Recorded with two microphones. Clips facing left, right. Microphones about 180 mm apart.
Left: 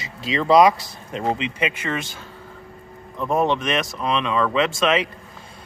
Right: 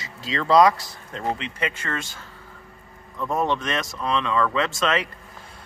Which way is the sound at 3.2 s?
20° left (ahead or behind).